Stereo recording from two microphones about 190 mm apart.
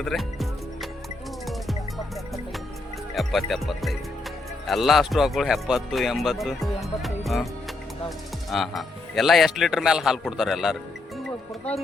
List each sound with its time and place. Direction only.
0.0 s music: centre (ahead or behind)
3.2 s speech: centre (ahead or behind)
8.4 s speech: centre (ahead or behind)